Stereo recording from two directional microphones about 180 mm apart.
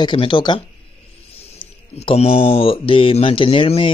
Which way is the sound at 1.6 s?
30° left (ahead or behind).